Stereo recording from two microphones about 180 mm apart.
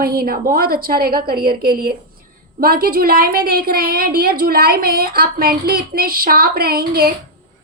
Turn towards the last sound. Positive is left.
turn(degrees=-60)  # may be behind; listen again after turning